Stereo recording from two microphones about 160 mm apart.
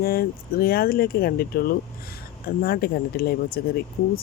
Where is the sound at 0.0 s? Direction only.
70° left (ahead or behind).